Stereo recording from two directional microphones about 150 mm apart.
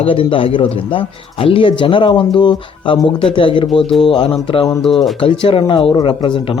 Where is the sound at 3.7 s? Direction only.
Centre (ahead or behind).